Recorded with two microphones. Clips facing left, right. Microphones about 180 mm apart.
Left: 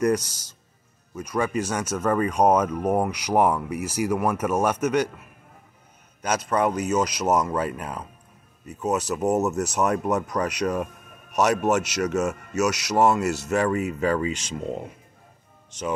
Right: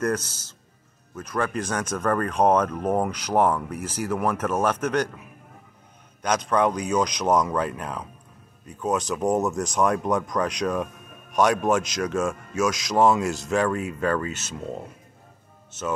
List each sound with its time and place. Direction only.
0.0 s speech: 10° left (ahead or behind)
6.2 s speech: 5° left (ahead or behind)